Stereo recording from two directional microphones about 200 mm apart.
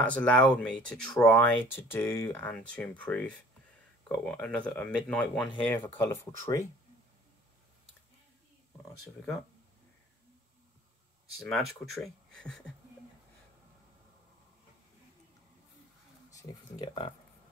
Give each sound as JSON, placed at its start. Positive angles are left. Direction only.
{"t": 0.0, "sound": "speech", "side_deg": 5}
{"t": 11.3, "sound": "speech", "side_deg": 0}
{"t": 16.3, "sound": "speech", "side_deg": 20}